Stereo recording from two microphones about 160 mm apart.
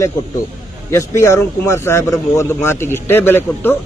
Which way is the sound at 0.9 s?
20° left (ahead or behind).